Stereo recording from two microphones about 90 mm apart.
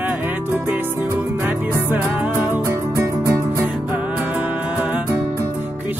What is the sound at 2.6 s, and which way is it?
Music, 35° right (ahead or behind).